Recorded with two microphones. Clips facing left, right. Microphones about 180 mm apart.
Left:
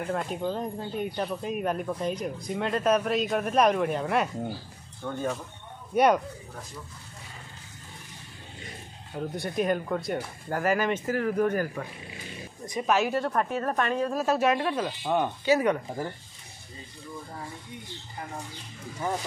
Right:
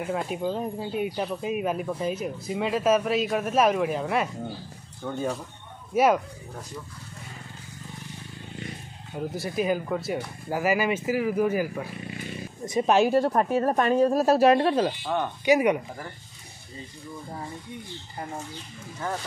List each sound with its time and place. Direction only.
0.0 s speech: 5° right (ahead or behind)
9.1 s speech: 5° right (ahead or behind)
12.6 s speech: 30° right (ahead or behind)
15.4 s speech: 15° right (ahead or behind)